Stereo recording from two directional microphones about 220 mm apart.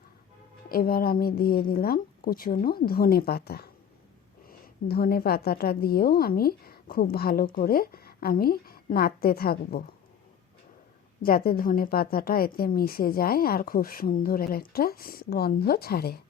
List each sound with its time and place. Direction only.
0.7 s a woman's voice: 40° left (ahead or behind)
11.2 s a woman's voice: 40° left (ahead or behind)